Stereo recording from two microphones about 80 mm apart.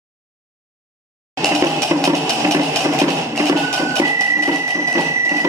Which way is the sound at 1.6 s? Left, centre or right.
Right.